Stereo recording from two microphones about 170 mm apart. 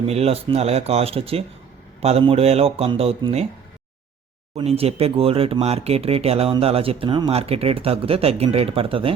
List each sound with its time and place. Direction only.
0.1 s speech: 35° right (ahead or behind)
4.5 s speech: 35° right (ahead or behind)